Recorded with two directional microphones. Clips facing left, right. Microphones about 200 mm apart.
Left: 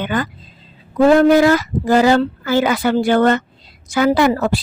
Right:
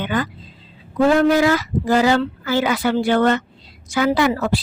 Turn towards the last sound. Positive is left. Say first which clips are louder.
# left 3 dB
turn(degrees=45)  # may be behind; listen again after turning